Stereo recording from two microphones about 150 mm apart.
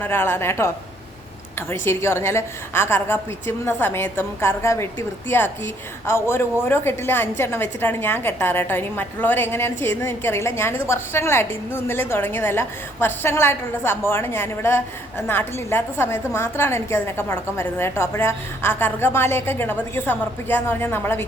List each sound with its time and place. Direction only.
0.0 s a woman's voice: 15° left (ahead or behind)